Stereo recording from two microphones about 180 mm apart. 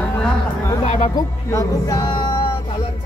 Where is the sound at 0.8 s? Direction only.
45° left (ahead or behind).